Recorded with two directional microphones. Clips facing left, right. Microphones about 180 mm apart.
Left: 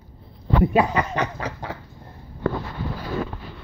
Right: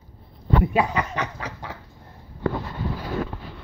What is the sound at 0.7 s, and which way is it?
Snicker, 40° left (ahead or behind).